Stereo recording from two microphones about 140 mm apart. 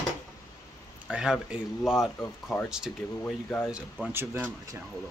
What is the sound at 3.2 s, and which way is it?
Speech, 10° left (ahead or behind).